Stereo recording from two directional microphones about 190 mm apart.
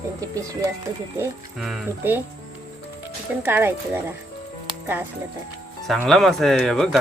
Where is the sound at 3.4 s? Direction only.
10° right (ahead or behind).